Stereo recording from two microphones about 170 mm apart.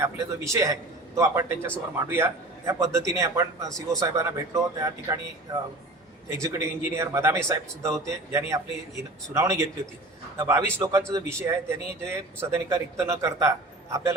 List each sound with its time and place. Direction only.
0.0 s a man's voice: 15° right (ahead or behind)